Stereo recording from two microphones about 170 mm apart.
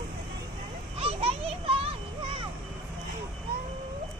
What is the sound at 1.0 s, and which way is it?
Children playing, 35° right (ahead or behind).